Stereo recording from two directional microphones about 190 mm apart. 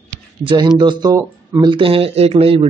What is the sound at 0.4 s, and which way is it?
Speech, 25° right (ahead or behind).